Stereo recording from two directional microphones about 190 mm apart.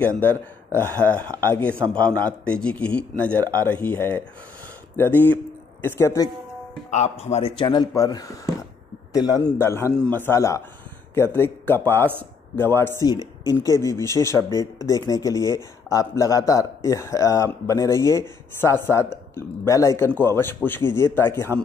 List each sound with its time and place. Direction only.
0.7 s speech: 10° left (ahead or behind)
6.9 s a man's voice: 35° left (ahead or behind); by 21.5 s 10° left (ahead or behind)